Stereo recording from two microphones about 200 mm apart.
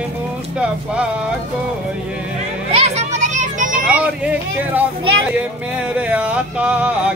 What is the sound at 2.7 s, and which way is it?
Children playing, 35° right (ahead or behind).